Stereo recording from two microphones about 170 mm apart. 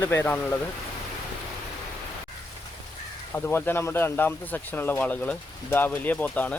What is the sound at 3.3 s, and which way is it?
Speech, 10° left (ahead or behind).